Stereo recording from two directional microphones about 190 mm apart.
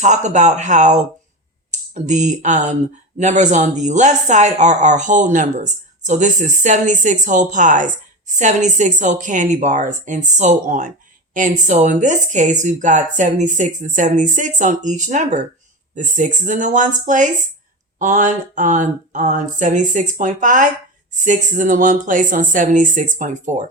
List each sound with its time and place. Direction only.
0.0 s speech: 40° right (ahead or behind)